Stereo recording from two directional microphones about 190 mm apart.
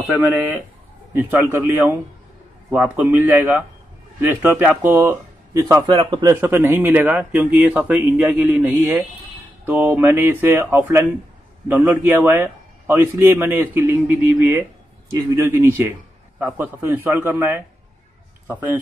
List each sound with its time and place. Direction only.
0.0 s a man's voice: 10° right (ahead or behind); by 6.3 s 25° right (ahead or behind)
6.4 s a man's voice: 15° right (ahead or behind)